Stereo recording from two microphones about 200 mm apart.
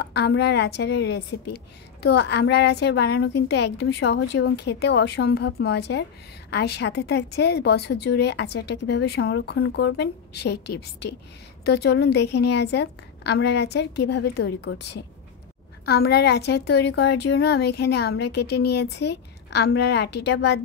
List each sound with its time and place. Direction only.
0.0 s a woman's voice: 55° left (ahead or behind)
15.8 s a woman's voice: 55° left (ahead or behind)